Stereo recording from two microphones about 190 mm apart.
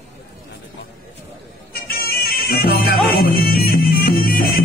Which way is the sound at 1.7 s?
55° left (ahead or behind).